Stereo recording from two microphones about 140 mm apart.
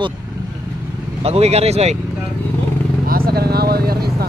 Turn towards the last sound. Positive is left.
turn(degrees=-90)